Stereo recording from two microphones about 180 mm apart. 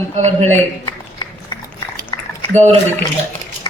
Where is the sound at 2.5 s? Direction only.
40° right (ahead or behind).